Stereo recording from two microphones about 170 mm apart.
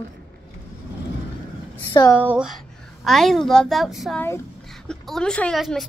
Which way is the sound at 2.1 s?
5° right (ahead or behind).